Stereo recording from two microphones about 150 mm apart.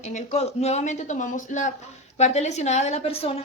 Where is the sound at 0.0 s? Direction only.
50° left (ahead or behind).